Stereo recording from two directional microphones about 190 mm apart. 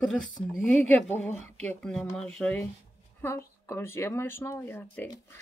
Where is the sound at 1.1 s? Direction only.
10° left (ahead or behind).